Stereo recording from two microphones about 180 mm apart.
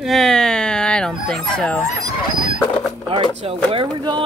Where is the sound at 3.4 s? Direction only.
30° right (ahead or behind).